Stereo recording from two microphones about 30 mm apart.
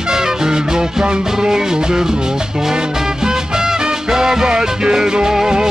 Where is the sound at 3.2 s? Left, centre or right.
Centre.